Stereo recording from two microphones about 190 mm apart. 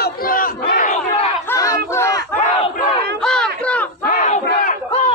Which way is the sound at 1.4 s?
15° left (ahead or behind).